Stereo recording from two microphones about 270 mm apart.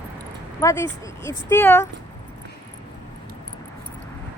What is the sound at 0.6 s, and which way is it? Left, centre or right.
Speech, centre.